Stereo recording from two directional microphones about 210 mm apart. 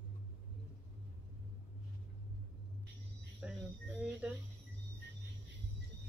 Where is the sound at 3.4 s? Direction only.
5° right (ahead or behind).